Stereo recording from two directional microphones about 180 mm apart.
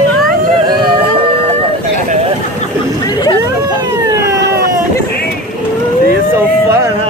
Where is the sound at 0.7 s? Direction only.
30° right (ahead or behind).